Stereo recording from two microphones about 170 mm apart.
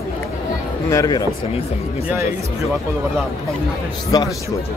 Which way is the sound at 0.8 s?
20° left (ahead or behind).